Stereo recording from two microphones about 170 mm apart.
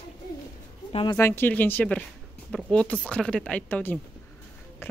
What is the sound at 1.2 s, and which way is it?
A woman's voice, 15° left (ahead or behind).